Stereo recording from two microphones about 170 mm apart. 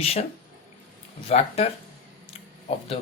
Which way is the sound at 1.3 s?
40° left (ahead or behind).